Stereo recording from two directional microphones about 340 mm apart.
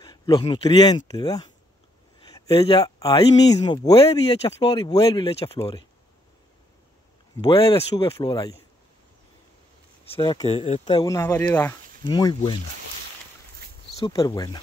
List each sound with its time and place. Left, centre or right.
0.0 s speech: centre
7.5 s speech: centre
10.0 s speech: centre
13.9 s speech: centre